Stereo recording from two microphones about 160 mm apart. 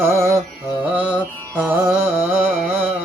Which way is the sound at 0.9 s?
10° right (ahead or behind).